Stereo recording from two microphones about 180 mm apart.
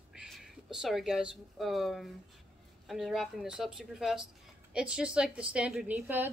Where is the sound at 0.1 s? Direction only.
Centre (ahead or behind).